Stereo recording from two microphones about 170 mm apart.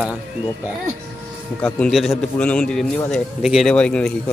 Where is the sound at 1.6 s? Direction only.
5° left (ahead or behind).